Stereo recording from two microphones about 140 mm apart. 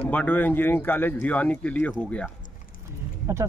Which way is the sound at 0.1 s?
10° left (ahead or behind).